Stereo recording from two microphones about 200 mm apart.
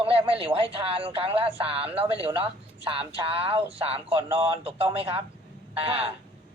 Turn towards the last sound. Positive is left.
turn(degrees=-30)  # may be behind; listen again after turning